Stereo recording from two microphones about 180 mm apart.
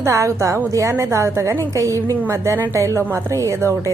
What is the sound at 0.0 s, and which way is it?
A woman's voice, 15° right (ahead or behind).